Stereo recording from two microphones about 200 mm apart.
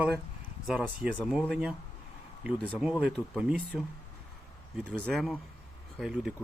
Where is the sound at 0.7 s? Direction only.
5° right (ahead or behind).